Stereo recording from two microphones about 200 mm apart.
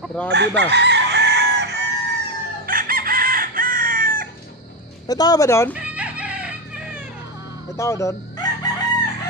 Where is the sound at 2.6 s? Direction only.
45° right (ahead or behind).